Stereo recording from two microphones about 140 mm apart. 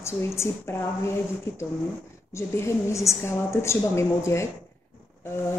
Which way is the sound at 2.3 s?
20° left (ahead or behind).